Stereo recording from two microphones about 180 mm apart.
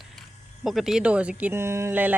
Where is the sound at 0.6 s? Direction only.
Centre (ahead or behind).